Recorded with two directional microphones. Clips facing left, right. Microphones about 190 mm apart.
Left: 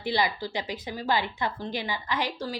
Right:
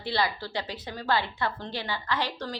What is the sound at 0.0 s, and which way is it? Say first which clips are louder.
A woman's voice: left 2 dB; 15° left (ahead or behind).